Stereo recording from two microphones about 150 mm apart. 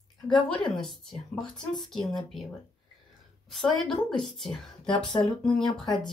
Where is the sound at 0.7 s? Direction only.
5° left (ahead or behind).